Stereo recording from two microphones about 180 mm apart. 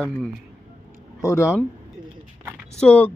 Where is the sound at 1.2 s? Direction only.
15° left (ahead or behind).